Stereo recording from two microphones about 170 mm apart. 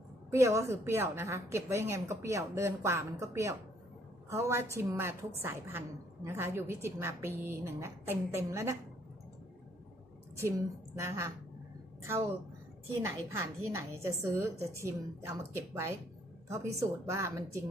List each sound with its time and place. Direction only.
0.3 s a woman's voice: 15° right (ahead or behind)
11.0 s a woman's voice: 15° right (ahead or behind)
13.0 s a woman's voice: 15° right (ahead or behind)